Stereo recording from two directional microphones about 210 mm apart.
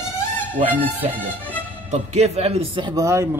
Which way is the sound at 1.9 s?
30° right (ahead or behind).